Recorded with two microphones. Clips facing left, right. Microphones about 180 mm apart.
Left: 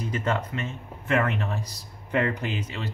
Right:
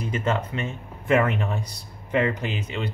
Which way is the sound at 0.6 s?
15° right (ahead or behind).